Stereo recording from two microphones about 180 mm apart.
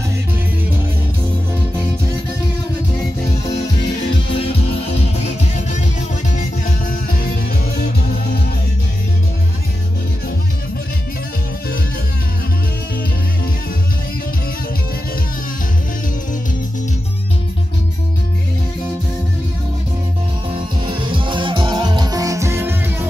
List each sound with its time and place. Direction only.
4.5 s music: 35° left (ahead or behind)
20.5 s music: 25° right (ahead or behind); by 23.0 s 10° right (ahead or behind)